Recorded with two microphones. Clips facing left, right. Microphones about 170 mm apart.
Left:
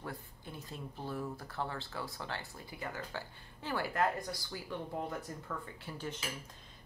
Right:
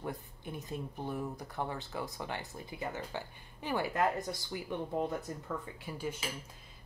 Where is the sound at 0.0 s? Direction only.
20° right (ahead or behind).